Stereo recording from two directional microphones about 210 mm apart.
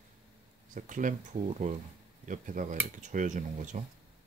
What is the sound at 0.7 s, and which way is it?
Speech, 40° right (ahead or behind).